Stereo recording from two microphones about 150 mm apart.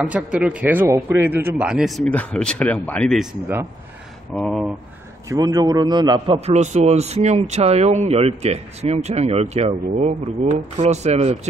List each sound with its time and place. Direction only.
0.1 s speech: 5° right (ahead or behind)
4.4 s speech: centre (ahead or behind)
5.3 s a man's voice: 25° right (ahead or behind); by 11.3 s 45° right (ahead or behind)